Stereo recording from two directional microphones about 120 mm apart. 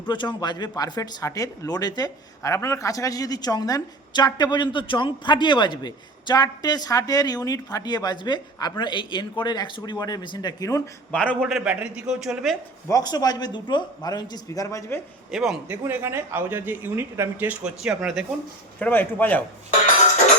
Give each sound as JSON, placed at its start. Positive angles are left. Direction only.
{"t": 0.1, "sound": "speech", "side_deg": 40}
{"t": 11.1, "sound": "a man's voice", "side_deg": 10}
{"t": 11.4, "sound": "speech", "side_deg": 0}
{"t": 12.9, "sound": "speech", "side_deg": 35}
{"t": 15.3, "sound": "speech", "side_deg": 0}
{"t": 15.8, "sound": "speech", "side_deg": -20}
{"t": 18.8, "sound": "a man's voice", "side_deg": 15}